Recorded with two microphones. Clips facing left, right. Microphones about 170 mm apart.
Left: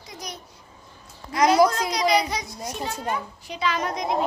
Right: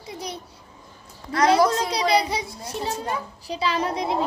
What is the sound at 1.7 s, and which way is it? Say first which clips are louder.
A child's voice: right 1 dB; 30° right (ahead or behind).